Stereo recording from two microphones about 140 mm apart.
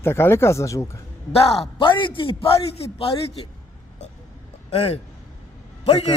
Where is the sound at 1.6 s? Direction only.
40° left (ahead or behind).